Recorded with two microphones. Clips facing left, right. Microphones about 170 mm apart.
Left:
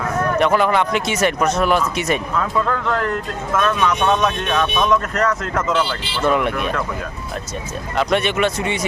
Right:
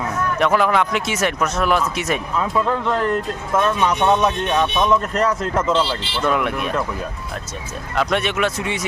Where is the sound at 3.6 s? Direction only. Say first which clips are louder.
Even; 25° right (ahead or behind).